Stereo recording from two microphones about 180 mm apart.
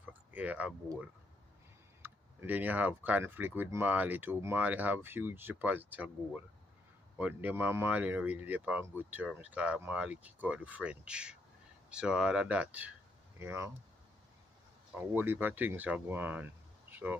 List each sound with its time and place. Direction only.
0.3 s speech: 10° right (ahead or behind)
2.0 s speech: 10° right (ahead or behind)
15.0 s speech: 10° right (ahead or behind)
16.9 s a sound: 10° right (ahead or behind)